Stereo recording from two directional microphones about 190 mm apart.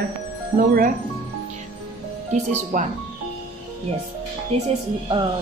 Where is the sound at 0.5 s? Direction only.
50° right (ahead or behind).